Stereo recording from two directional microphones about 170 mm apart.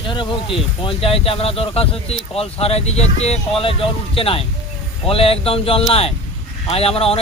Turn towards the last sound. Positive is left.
turn(degrees=35)  # may be behind; listen again after turning